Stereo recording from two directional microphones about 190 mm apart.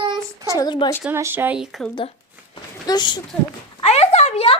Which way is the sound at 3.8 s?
35° left (ahead or behind).